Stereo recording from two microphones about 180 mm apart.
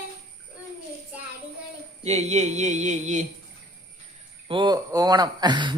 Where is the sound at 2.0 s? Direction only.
40° right (ahead or behind).